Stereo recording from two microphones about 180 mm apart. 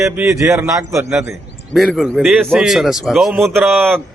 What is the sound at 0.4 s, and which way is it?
Speech, 15° right (ahead or behind).